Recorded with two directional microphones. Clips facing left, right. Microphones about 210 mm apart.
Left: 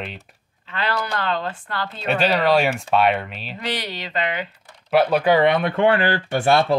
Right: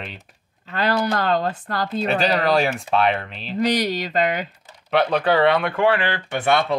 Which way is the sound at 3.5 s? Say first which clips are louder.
Right 9 dB; 40° right (ahead or behind).